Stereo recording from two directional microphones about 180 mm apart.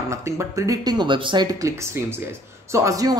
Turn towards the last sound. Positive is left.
turn(degrees=-20)  # may be behind; listen again after turning